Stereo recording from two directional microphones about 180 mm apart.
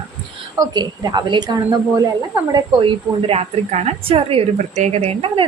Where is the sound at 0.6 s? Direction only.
20° right (ahead or behind).